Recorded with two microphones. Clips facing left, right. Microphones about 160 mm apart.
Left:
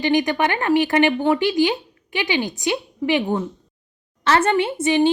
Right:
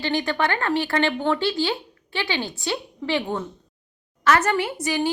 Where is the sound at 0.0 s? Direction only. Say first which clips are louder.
Left 5 dB; 15° left (ahead or behind).